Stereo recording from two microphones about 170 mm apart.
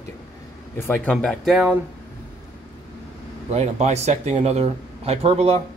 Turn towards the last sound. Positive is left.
turn(degrees=-35)  # may be behind; listen again after turning